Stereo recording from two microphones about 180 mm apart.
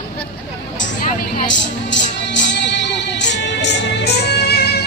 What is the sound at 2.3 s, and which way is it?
Music, 80° left.